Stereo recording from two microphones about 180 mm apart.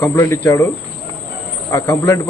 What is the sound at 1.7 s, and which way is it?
Speech, 15° left (ahead or behind).